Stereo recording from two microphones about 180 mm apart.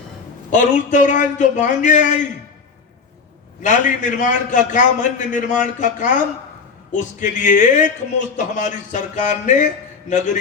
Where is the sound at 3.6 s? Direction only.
45° left (ahead or behind).